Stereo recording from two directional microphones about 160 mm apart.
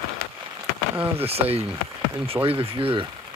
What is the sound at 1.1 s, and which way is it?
Speech, 40° right (ahead or behind).